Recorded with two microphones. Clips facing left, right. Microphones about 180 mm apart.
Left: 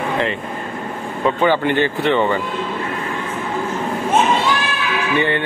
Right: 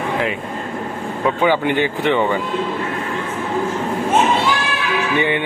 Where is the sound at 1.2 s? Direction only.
10° right (ahead or behind).